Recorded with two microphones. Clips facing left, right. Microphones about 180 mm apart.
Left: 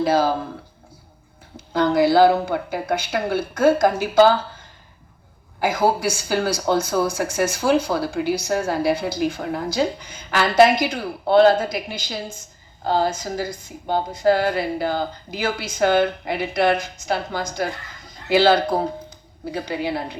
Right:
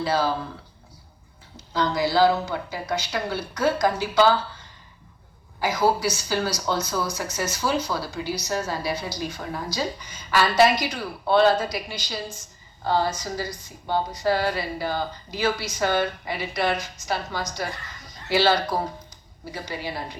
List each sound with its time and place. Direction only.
0.0 s speech: 50° left (ahead or behind)
1.5 s speech: 55° left (ahead or behind)
13.4 s a woman's voice: 50° left (ahead or behind)